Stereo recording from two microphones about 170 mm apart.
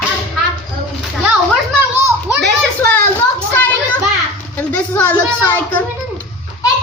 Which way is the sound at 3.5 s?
10° left (ahead or behind).